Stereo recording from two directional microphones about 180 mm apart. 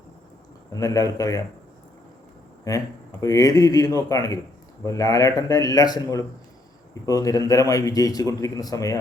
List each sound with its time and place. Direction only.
0.7 s a man's voice: 20° left (ahead or behind)
2.6 s a man's voice: 20° left (ahead or behind)